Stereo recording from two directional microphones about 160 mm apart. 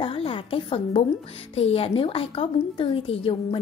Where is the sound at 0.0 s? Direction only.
35° left (ahead or behind).